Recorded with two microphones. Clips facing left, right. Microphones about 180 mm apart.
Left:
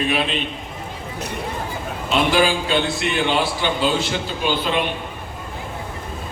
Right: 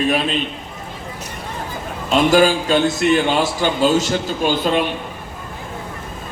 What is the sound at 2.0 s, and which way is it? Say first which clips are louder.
A man's voice: right 5 dB; 45° right (ahead or behind).